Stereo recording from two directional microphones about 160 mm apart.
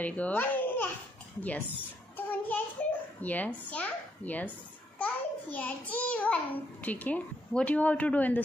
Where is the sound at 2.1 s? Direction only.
10° left (ahead or behind).